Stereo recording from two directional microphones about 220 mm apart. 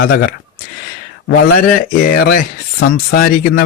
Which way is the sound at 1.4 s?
40° left (ahead or behind).